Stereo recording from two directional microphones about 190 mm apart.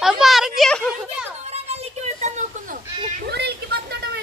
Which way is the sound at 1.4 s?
35° right (ahead or behind).